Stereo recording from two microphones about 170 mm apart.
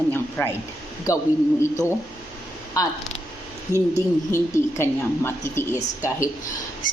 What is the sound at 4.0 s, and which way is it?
A woman's voice, 15° left (ahead or behind).